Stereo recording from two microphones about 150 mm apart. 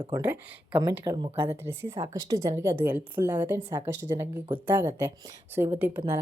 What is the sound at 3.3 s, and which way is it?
Speech, 25° right (ahead or behind).